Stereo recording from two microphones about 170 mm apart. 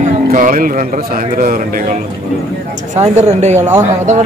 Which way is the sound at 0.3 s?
50° right (ahead or behind).